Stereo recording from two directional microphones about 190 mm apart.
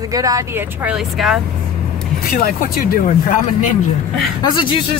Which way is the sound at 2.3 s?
45° left (ahead or behind).